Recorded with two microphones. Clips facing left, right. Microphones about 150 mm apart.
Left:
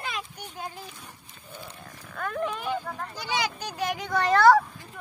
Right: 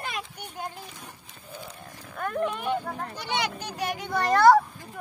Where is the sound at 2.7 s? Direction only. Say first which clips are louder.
Right 2 dB; 25° right (ahead or behind).